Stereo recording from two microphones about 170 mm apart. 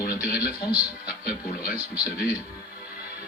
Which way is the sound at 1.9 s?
10° right (ahead or behind).